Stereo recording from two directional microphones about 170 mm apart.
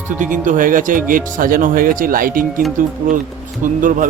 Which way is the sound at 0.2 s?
50° right (ahead or behind).